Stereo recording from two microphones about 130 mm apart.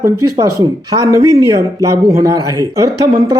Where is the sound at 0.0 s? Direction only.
25° right (ahead or behind).